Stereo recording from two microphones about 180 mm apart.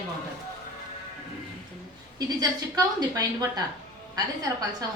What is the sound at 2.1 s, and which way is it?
Speech, 20° right (ahead or behind).